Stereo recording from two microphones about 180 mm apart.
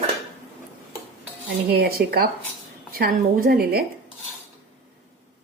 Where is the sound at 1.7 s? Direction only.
60° right (ahead or behind).